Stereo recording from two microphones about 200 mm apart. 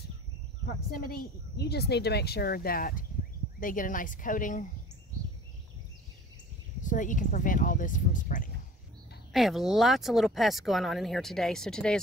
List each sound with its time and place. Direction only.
0.9 s speech: 50° left (ahead or behind)
6.8 s speech: 40° left (ahead or behind)
9.3 s speech: centre (ahead or behind)